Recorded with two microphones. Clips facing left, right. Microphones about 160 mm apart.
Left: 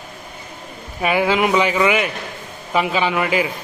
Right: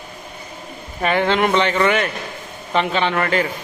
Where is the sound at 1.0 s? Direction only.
5° left (ahead or behind).